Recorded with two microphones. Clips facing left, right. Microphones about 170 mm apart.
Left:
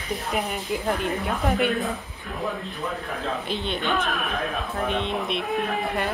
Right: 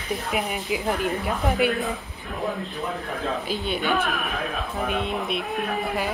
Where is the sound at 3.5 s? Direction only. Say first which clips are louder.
Right 1 dB; 5° right (ahead or behind).